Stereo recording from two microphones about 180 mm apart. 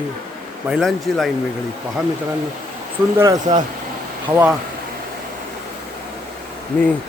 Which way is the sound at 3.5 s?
25° right (ahead or behind).